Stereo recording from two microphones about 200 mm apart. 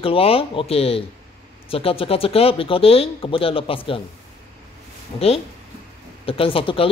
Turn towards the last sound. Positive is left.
turn(degrees=25)  # may be behind; listen again after turning